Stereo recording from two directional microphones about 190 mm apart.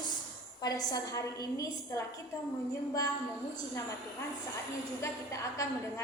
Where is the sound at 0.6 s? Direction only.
20° left (ahead or behind).